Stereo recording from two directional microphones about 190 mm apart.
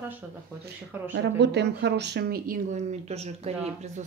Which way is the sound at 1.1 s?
65° right (ahead or behind).